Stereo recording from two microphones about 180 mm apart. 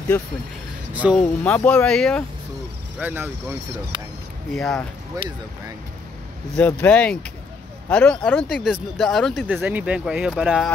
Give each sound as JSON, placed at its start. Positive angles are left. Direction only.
{"t": 0.9, "sound": "speech", "side_deg": -5}
{"t": 1.4, "sound": "speech", "side_deg": 10}
{"t": 3.0, "sound": "speech", "side_deg": -10}
{"t": 3.9, "sound": "speech", "side_deg": -25}
{"t": 4.6, "sound": "speech", "side_deg": 5}
{"t": 5.1, "sound": "speech", "side_deg": -20}
{"t": 6.5, "sound": "speech", "side_deg": 10}
{"t": 9.5, "sound": "speech", "side_deg": -10}